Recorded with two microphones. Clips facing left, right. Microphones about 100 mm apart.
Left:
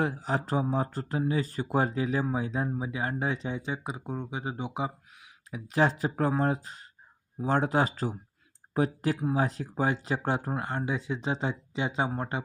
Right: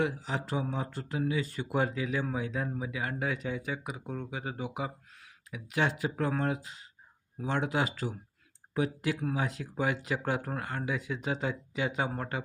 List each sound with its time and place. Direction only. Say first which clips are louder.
0.0 s speech: left 3 dB; 40° left (ahead or behind); by 4.9 s 25° left (ahead or behind)
5.5 s speech: left 5 dB; 35° left (ahead or behind)